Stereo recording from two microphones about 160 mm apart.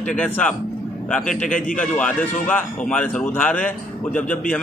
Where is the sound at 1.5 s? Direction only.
55° left (ahead or behind).